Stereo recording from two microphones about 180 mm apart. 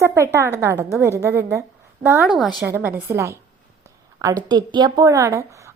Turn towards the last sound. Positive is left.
turn(degrees=-15)  # may be behind; listen again after turning